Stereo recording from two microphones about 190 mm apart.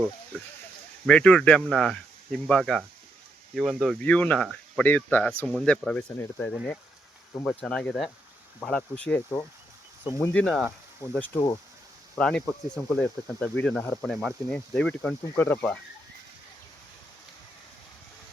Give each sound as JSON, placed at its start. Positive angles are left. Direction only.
{"t": 1.0, "sound": "speech", "side_deg": 5}
{"t": 10.0, "sound": "speech", "side_deg": 20}
{"t": 10.3, "sound": "speech", "side_deg": 5}